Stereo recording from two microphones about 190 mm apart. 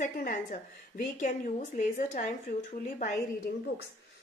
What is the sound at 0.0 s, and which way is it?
A woman's voice, 45° left (ahead or behind).